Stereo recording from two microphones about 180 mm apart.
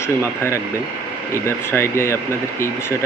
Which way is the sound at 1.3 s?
15° left (ahead or behind).